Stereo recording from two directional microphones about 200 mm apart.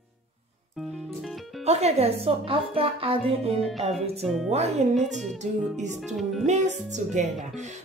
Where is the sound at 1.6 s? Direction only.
35° right (ahead or behind).